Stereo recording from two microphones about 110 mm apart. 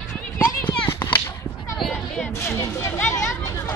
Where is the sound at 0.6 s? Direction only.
20° left (ahead or behind).